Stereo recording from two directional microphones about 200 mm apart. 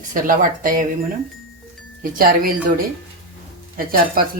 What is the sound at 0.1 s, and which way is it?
Speech, 45° right (ahead or behind).